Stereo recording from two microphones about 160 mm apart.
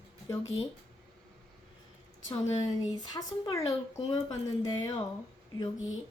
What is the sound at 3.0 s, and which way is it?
Speech, 20° left (ahead or behind).